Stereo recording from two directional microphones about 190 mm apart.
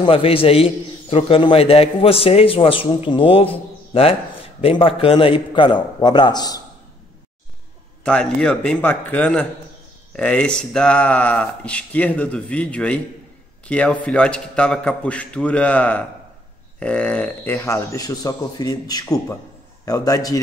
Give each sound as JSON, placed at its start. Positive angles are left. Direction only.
{"t": 0.0, "sound": "a man's voice", "side_deg": 30}
{"t": 8.0, "sound": "a man's voice", "side_deg": 5}